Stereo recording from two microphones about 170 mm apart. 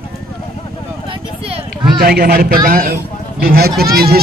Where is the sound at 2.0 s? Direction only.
65° right (ahead or behind).